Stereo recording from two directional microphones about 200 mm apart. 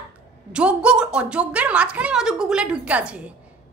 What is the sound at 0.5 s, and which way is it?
A woman's voice, 5° right (ahead or behind).